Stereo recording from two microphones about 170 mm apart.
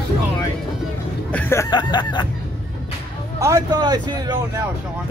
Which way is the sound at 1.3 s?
10° left (ahead or behind).